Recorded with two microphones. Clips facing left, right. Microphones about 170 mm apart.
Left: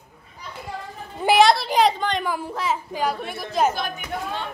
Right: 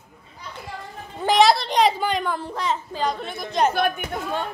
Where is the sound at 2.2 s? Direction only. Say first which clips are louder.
Even; 5° left (ahead or behind).